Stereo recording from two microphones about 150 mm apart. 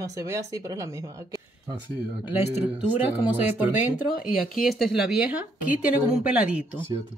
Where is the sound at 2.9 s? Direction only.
10° right (ahead or behind).